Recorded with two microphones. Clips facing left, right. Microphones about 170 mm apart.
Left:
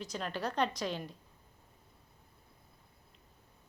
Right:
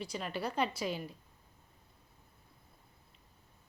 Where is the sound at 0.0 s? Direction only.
5° right (ahead or behind).